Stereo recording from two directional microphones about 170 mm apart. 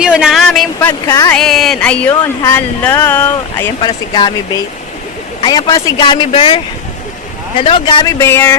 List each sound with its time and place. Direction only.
0.0 s speech: 5° right (ahead or behind)
1.0 s a man's voice: 20° left (ahead or behind)
1.3 s a sound: centre (ahead or behind)
2.6 s speech: 10° left (ahead or behind)
3.8 s a man's voice: 30° left (ahead or behind)
7.6 s speech: 30° left (ahead or behind)
8.0 s speech: 15° left (ahead or behind)